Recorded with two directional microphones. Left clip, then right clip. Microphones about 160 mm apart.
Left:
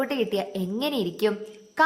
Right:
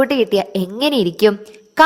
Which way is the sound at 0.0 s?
45° right (ahead or behind).